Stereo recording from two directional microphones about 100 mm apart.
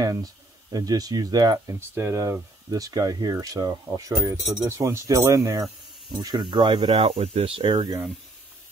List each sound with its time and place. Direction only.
0.0 s speech: 40° right (ahead or behind)
1.8 s speech: 25° right (ahead or behind)
6.1 s speech: 50° right (ahead or behind); by 7.7 s 65° right (ahead or behind)